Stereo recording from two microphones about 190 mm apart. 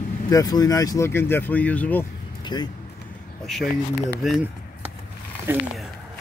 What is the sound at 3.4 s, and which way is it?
Speech, centre (ahead or behind).